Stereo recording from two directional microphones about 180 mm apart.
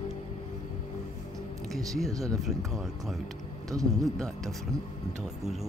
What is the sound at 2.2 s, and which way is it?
Speech, centre (ahead or behind).